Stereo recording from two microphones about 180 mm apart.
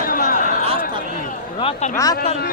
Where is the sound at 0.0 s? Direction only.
50° left (ahead or behind).